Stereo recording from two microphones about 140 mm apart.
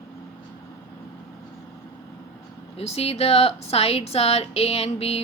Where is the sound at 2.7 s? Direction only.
45° left (ahead or behind).